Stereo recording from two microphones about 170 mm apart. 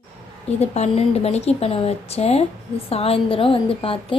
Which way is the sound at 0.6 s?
40° left (ahead or behind).